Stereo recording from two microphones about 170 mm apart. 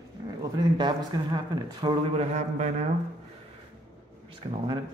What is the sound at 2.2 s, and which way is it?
Speech, 45° right (ahead or behind).